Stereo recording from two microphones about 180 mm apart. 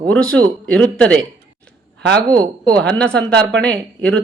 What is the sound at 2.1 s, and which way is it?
Speech, 20° right (ahead or behind).